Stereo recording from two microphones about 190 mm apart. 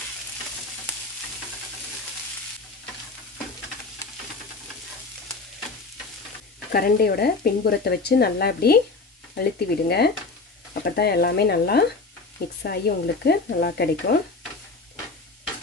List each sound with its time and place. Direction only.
6.7 s speech: 55° left (ahead or behind)